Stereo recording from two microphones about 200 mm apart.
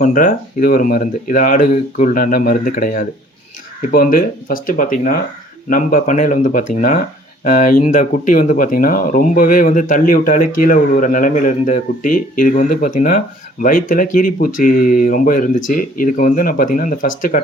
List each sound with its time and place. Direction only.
0.0 s speech: 40° left (ahead or behind)